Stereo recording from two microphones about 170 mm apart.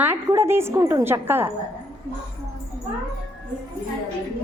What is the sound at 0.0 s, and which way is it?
A woman's voice, 15° right (ahead or behind).